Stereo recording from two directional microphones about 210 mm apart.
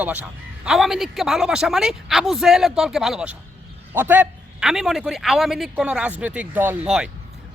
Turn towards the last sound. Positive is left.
turn(degrees=-5)  # may be behind; listen again after turning